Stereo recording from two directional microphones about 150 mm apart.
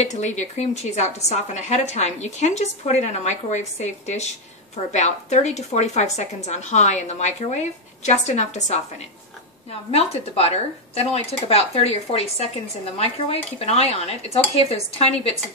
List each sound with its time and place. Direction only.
0.0 s a woman's voice: 50° left (ahead or behind)
9.8 s a woman's voice: 40° left (ahead or behind)